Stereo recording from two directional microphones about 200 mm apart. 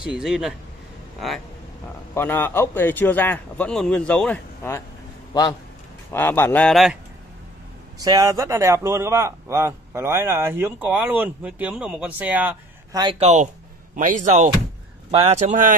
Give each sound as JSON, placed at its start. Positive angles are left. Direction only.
{"t": 0.0, "sound": "speech", "side_deg": -5}
{"t": 2.1, "sound": "speech", "side_deg": 10}
{"t": 6.1, "sound": "speech", "side_deg": 10}
{"t": 8.0, "sound": "speech", "side_deg": -20}
{"t": 13.2, "sound": "a man's voice", "side_deg": -35}